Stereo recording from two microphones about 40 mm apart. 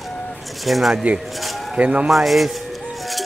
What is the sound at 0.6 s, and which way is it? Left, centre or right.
Speech, centre.